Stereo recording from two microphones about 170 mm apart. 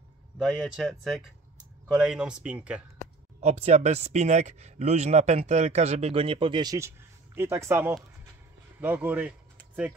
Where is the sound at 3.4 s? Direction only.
40° right (ahead or behind).